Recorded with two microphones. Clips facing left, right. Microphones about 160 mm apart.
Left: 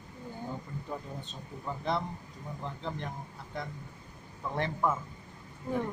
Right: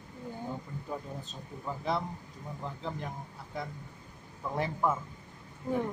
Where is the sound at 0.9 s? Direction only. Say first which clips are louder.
Right 2 dB; 5° right (ahead or behind).